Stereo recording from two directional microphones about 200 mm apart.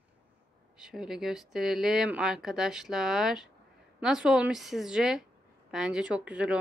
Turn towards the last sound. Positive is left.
turn(degrees=-5)  # may be behind; listen again after turning